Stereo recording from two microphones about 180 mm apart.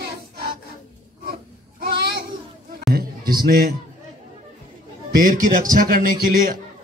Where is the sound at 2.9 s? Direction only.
55° right (ahead or behind).